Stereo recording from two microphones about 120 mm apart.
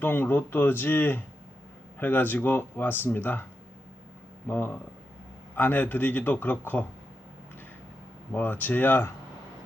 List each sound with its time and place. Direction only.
0.0 s speech: 15° left (ahead or behind)
4.4 s speech: 15° left (ahead or behind)
8.3 s speech: 15° left (ahead or behind)